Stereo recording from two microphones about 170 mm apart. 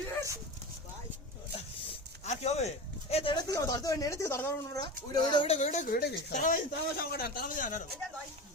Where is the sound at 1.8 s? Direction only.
35° left (ahead or behind); by 4.5 s 15° left (ahead or behind).